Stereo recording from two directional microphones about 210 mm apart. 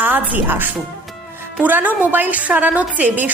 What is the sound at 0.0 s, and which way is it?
A woman's voice, 10° right (ahead or behind).